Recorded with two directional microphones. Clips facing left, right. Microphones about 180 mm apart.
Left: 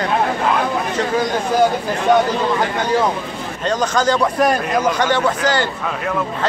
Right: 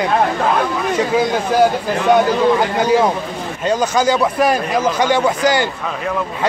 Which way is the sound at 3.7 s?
10° right (ahead or behind).